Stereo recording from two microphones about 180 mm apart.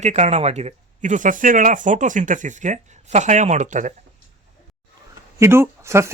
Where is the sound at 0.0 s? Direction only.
40° right (ahead or behind).